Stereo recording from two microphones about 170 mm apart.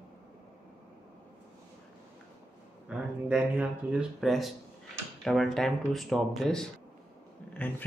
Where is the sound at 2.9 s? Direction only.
5° right (ahead or behind).